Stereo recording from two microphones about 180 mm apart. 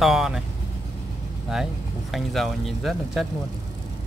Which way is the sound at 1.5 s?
Centre (ahead or behind).